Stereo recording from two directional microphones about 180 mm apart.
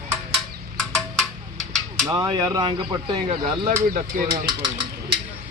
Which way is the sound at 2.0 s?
20° right (ahead or behind).